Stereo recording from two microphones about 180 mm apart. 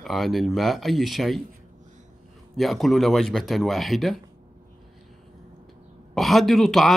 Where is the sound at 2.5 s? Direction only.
Centre (ahead or behind).